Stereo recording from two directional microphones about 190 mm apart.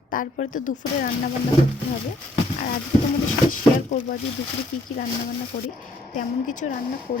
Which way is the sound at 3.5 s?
45° left (ahead or behind).